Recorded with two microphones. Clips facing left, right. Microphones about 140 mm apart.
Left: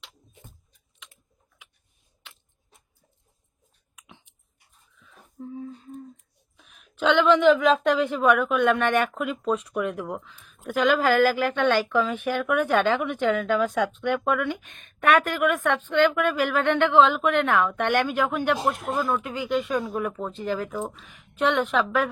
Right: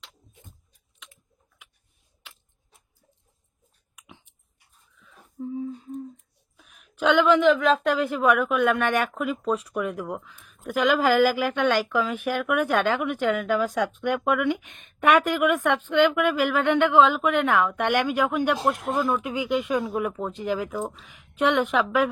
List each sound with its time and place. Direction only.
3.9 s chewing: 5° right (ahead or behind)
4.9 s a sound: 5° right (ahead or behind)
6.6 s a woman's voice: 5° right (ahead or behind)
10.8 s speech: 15° right (ahead or behind)
20.7 s a woman's voice: centre (ahead or behind)
21.1 s speech: 15° right (ahead or behind)